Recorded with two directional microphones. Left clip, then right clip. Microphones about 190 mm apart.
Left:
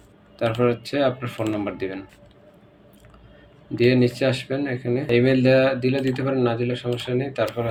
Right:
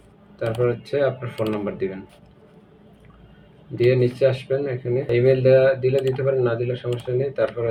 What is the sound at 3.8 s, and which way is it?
Speech, 50° left (ahead or behind).